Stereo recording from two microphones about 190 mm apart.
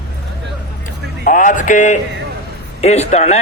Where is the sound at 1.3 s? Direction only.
45° left (ahead or behind).